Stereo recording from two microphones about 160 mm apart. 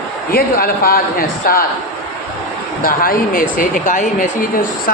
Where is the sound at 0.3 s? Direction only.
65° left (ahead or behind).